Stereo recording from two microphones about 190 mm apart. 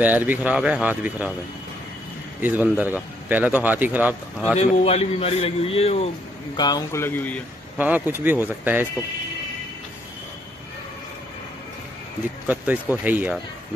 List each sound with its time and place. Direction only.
0.0 s speech: 10° right (ahead or behind)
2.4 s speech: 10° right (ahead or behind)
4.6 s a man's voice: 30° left (ahead or behind); by 7.4 s 10° left (ahead or behind)
7.7 s speech: 10° right (ahead or behind)
12.4 s speech: 10° right (ahead or behind)